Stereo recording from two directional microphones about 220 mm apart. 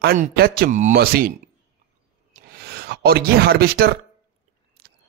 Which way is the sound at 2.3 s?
45° right (ahead or behind).